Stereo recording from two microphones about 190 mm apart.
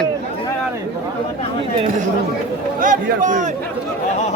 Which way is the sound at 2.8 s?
45° right (ahead or behind).